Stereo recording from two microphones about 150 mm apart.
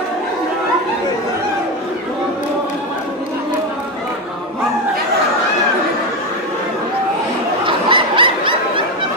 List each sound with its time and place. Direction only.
7.6 s snicker: 35° right (ahead or behind)